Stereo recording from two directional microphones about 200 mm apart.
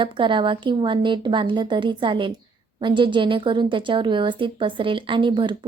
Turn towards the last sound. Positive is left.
turn(degrees=-25)  # may be behind; listen again after turning